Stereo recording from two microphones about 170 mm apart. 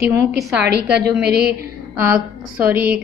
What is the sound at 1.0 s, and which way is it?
Speech, 65° right (ahead or behind).